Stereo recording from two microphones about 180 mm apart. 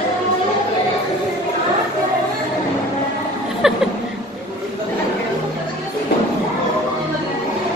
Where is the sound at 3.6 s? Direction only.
5° right (ahead or behind).